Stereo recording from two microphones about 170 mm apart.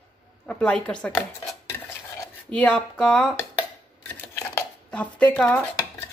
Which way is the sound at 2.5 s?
5° left (ahead or behind).